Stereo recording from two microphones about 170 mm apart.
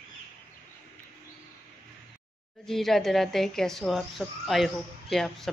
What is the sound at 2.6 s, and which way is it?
Speech, centre (ahead or behind).